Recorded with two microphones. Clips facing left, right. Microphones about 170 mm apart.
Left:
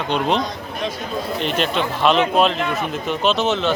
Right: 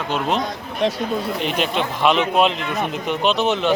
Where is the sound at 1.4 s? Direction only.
10° right (ahead or behind).